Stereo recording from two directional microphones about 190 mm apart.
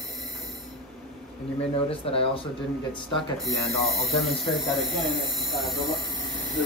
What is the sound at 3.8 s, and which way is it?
Speech, centre (ahead or behind).